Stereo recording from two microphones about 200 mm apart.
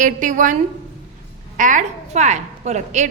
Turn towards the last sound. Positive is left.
turn(degrees=-35)  # may be behind; listen again after turning